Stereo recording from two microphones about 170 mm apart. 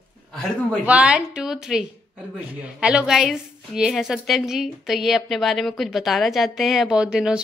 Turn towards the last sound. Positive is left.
turn(degrees=-5)  # may be behind; listen again after turning